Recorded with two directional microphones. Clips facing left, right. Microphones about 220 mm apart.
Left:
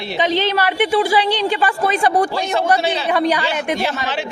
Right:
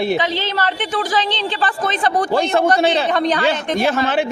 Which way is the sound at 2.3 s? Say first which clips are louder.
Right 3 dB; 55° right (ahead or behind).